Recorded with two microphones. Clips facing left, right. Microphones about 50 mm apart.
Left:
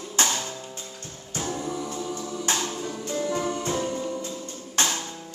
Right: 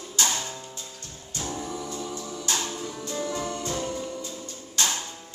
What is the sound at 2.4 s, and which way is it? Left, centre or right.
Music, left.